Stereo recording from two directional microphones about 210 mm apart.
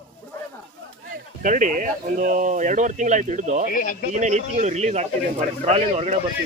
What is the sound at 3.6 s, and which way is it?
Speech, 40° left (ahead or behind).